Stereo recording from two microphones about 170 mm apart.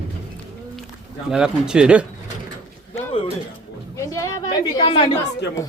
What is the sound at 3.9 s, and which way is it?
A woman's voice, 15° left (ahead or behind).